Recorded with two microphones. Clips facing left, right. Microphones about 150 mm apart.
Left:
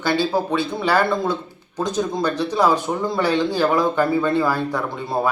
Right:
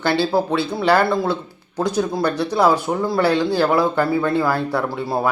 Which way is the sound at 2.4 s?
10° right (ahead or behind).